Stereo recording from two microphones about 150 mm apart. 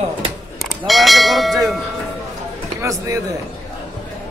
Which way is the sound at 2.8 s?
20° right (ahead or behind).